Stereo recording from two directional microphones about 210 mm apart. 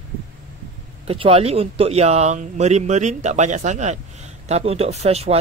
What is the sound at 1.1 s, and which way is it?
Speech, 25° right (ahead or behind).